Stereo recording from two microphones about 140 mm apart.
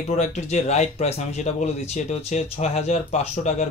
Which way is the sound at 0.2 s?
55° left (ahead or behind).